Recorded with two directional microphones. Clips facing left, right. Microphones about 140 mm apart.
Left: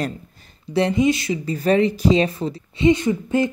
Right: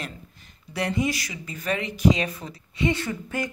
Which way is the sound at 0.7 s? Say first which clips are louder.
Left 8 dB; 25° left (ahead or behind).